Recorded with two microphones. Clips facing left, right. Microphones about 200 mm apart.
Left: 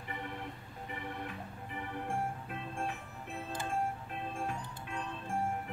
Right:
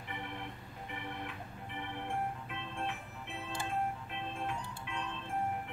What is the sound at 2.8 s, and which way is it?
Music, 40° left (ahead or behind).